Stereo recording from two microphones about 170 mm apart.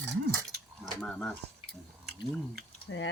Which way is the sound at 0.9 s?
5° left (ahead or behind).